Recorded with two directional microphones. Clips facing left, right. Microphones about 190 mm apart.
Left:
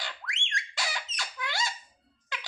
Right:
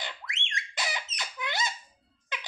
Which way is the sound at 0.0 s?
20° right (ahead or behind).